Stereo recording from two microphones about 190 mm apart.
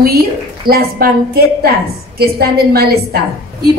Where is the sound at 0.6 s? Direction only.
50° right (ahead or behind).